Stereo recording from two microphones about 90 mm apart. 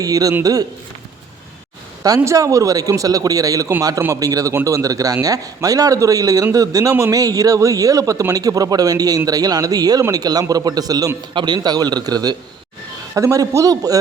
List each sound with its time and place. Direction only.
0.0 s a man's voice: 40° right (ahead or behind)
2.0 s a man's voice: 35° right (ahead or behind)
11.3 s a man's voice: 55° right (ahead or behind)
13.1 s a man's voice: 40° right (ahead or behind)